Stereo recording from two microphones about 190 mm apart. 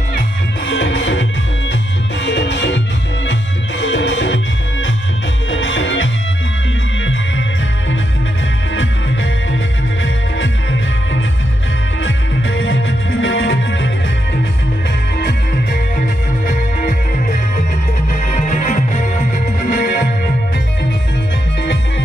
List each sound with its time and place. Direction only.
0.7 s music: 75° left (ahead or behind)
2.2 s music: 65° left (ahead or behind)
3.8 s music: 75° left (ahead or behind)
5.5 s music: 85° left
12.0 s music: 80° left
15.1 s music: 55° left (ahead or behind)
16.4 s music: 45° left (ahead or behind)